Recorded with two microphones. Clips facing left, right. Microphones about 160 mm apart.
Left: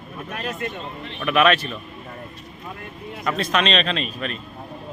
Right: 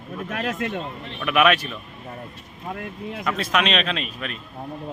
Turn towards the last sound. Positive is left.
turn(degrees=-5)  # may be behind; listen again after turning